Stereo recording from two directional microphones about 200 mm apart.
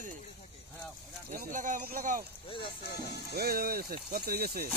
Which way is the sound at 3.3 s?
50° right (ahead or behind).